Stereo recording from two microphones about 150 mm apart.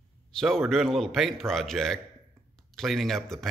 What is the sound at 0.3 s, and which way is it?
Speech, centre (ahead or behind).